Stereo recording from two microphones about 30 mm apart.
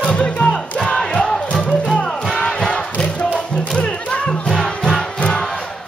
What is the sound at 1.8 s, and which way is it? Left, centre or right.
Music, left.